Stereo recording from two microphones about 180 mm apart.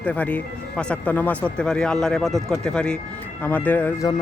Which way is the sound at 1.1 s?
10° left (ahead or behind).